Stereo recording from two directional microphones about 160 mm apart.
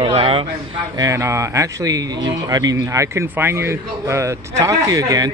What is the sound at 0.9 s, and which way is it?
Speech, 20° right (ahead or behind).